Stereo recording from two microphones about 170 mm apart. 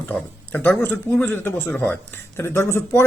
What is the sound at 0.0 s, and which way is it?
Speech, 10° left (ahead or behind).